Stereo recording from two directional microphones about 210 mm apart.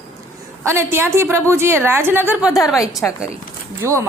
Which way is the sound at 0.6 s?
10° right (ahead or behind).